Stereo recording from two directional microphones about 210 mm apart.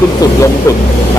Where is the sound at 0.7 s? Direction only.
15° left (ahead or behind).